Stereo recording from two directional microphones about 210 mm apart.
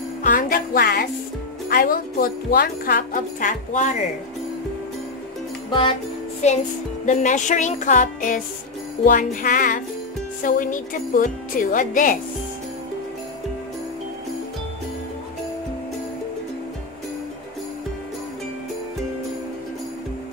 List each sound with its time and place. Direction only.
0.2 s jingle bell: 40° left (ahead or behind)
1.7 s speech: 45° left (ahead or behind)
5.7 s music: 25° left (ahead or behind)
6.4 s speech: 30° left (ahead or behind)